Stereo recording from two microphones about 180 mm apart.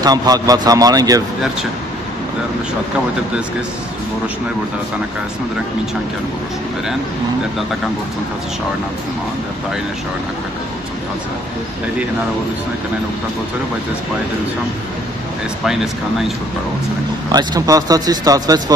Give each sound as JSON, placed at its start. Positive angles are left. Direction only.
{"t": 0.0, "sound": "speech", "side_deg": -20}
{"t": 15.6, "sound": "speech", "side_deg": 0}
{"t": 17.3, "sound": "speech", "side_deg": -20}